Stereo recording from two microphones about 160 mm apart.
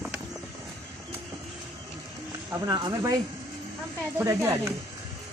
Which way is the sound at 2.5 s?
25° right (ahead or behind).